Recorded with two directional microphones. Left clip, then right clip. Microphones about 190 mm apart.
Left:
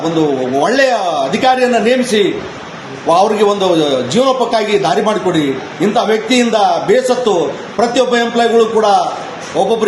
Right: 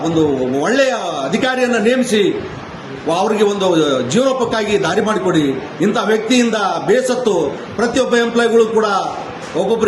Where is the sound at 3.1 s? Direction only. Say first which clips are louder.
Left 5 dB; 5° right (ahead or behind).